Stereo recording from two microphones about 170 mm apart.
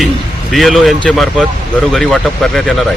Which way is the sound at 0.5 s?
Centre (ahead or behind).